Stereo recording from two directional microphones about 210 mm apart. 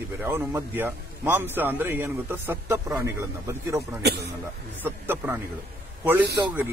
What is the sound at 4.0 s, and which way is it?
Speech, 50° right (ahead or behind).